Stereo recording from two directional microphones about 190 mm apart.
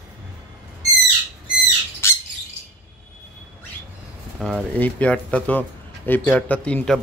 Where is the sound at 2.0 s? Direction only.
15° left (ahead or behind).